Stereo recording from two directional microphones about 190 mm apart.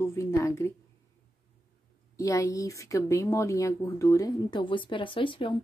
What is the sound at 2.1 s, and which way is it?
Speech, 15° left (ahead or behind).